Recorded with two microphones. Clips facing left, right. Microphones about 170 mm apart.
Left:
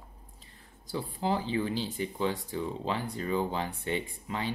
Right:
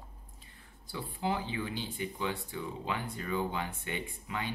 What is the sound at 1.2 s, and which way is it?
Speech, 35° left (ahead or behind).